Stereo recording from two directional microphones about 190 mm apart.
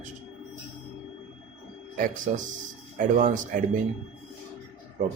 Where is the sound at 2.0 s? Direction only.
45° right (ahead or behind).